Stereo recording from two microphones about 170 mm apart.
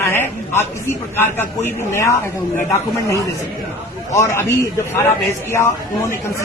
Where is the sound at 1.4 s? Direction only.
15° left (ahead or behind).